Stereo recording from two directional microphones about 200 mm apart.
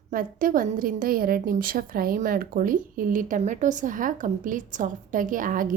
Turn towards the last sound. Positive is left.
turn(degrees=-45)  # may be behind; listen again after turning